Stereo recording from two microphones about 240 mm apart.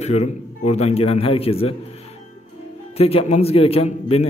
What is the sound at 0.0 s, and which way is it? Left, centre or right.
A man's voice, left.